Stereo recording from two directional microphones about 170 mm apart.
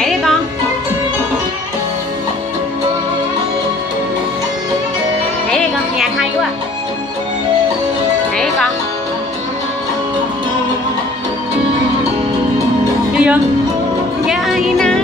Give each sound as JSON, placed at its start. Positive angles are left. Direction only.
{"t": 0.0, "sound": "music", "side_deg": 0}
{"t": 13.1, "sound": "music", "side_deg": -10}